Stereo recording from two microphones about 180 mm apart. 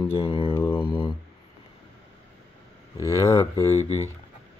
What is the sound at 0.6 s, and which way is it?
Speech, 10° left (ahead or behind).